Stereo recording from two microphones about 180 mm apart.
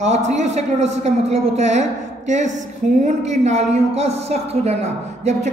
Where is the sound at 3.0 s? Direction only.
40° right (ahead or behind).